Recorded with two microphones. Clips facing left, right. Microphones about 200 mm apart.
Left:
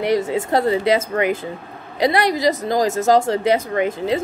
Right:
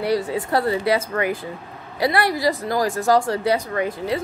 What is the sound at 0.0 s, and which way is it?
Speech, 20° left (ahead or behind).